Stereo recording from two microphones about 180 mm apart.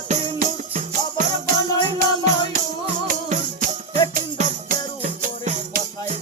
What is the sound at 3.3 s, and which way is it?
Music, 40° right (ahead or behind).